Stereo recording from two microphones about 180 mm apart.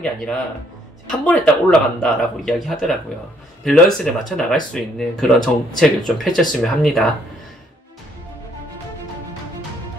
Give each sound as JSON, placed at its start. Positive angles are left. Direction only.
{"t": 0.0, "sound": "speech", "side_deg": 5}